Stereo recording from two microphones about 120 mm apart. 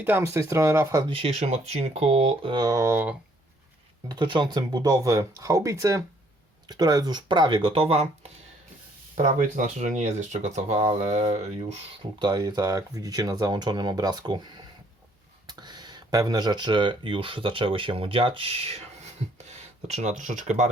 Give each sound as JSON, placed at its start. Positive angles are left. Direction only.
{"t": 0.0, "sound": "speech", "side_deg": -20}
{"t": 1.0, "sound": "speech", "side_deg": -50}
{"t": 2.5, "sound": "speech", "side_deg": -35}
{"t": 4.1, "sound": "speech", "side_deg": -40}
{"t": 9.2, "sound": "speech", "side_deg": -90}
{"t": 12.2, "sound": "speech", "side_deg": -35}
{"t": 19.2, "sound": "a sound", "side_deg": -65}
{"t": 19.5, "sound": "speech", "side_deg": -70}